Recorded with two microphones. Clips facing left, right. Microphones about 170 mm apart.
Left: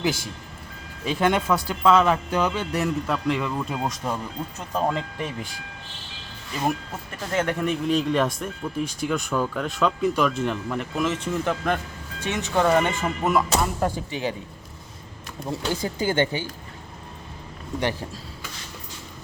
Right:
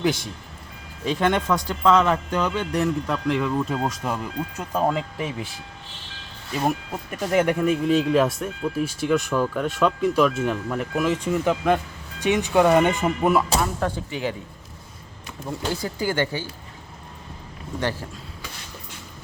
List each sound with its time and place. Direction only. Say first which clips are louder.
0.0 s speech: right 2 dB; 5° left (ahead or behind)
6.9 s speech: right 5 dB; 15° right (ahead or behind)
13.7 s speech: left 1 dB; 15° left (ahead or behind)
15.4 s speech: left 1 dB; 20° left (ahead or behind)